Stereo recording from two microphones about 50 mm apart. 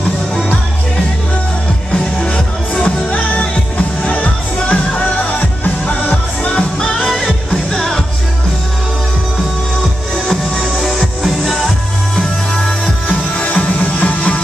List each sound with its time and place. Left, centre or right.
2.1 s music: centre; by 6.5 s left
6.5 s music: centre
7.1 s music: centre
11.0 s music: centre
13.4 s music: left